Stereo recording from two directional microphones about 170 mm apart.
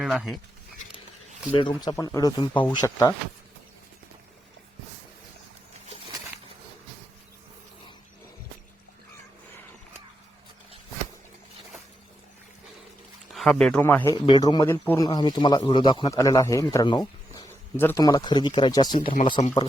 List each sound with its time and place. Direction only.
0.0 s speech: centre (ahead or behind)
1.5 s speech: 25° left (ahead or behind)
2.5 s speech: 10° left (ahead or behind)
13.3 s speech: 5° left (ahead or behind)
14.3 s speech: 25° left (ahead or behind)